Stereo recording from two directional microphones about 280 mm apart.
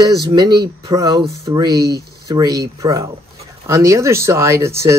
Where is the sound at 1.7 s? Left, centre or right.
Right.